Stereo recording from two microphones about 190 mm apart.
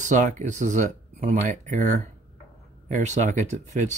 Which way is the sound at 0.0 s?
40° right (ahead or behind).